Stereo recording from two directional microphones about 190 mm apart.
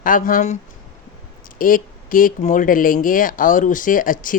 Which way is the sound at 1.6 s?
45° left (ahead or behind).